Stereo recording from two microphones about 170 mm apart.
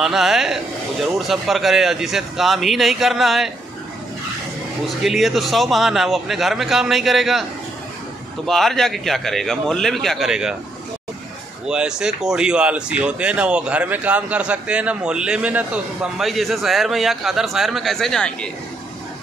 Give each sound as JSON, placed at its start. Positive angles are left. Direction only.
{"t": 0.0, "sound": "speech", "side_deg": 0}
{"t": 4.8, "sound": "speech", "side_deg": 0}
{"t": 8.5, "sound": "speech", "side_deg": 0}
{"t": 11.6, "sound": "speech", "side_deg": -5}